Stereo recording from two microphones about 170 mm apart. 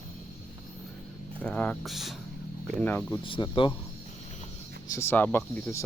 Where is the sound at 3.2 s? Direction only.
30° left (ahead or behind).